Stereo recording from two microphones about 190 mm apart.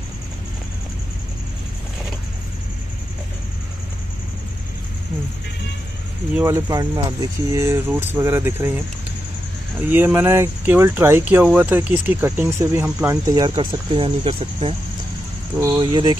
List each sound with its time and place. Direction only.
6.4 s speech: 15° right (ahead or behind)
9.8 s speech: 10° right (ahead or behind); by 14.8 s 30° right (ahead or behind)
15.8 s speech: 25° right (ahead or behind)